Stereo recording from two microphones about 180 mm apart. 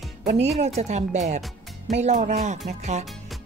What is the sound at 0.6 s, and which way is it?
Speech, 40° right (ahead or behind).